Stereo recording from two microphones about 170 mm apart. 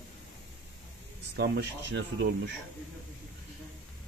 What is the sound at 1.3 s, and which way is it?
Speech, 70° right (ahead or behind).